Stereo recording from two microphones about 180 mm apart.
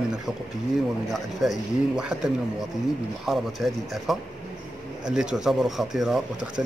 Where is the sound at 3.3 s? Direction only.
Centre (ahead or behind).